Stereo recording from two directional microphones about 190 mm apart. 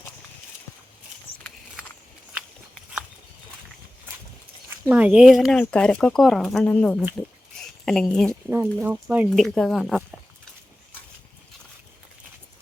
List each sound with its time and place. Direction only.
4.9 s speech: 5° right (ahead or behind)
7.2 s a sound: centre (ahead or behind)
8.4 s speech: 10° right (ahead or behind)